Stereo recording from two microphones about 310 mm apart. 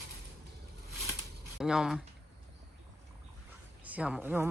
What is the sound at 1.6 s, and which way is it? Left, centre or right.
Speech, centre.